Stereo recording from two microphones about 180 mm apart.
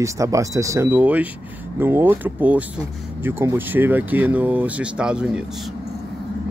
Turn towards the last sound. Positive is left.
turn(degrees=-5)  # may be behind; listen again after turning